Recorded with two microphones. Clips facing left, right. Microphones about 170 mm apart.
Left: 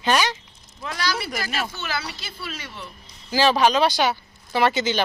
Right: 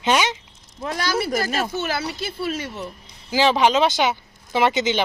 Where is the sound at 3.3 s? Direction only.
20° right (ahead or behind).